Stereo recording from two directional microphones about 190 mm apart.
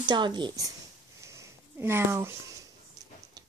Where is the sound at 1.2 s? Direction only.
15° right (ahead or behind).